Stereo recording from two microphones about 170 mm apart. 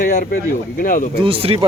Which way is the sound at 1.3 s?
30° right (ahead or behind).